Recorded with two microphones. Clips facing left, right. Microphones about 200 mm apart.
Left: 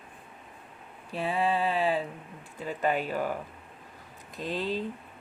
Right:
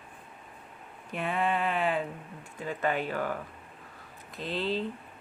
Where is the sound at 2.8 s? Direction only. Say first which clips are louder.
Left 2 dB; 15° left (ahead or behind).